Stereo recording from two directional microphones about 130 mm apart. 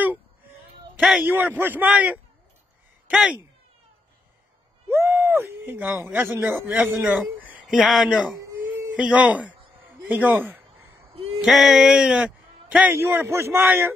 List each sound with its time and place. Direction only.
0.9 s speech: 5° right (ahead or behind)
1.2 s a man's voice: 15° right (ahead or behind)
4.8 s a man's voice: 20° right (ahead or behind)
7.6 s a man's voice: centre (ahead or behind)
11.4 s a man's voice: 5° right (ahead or behind)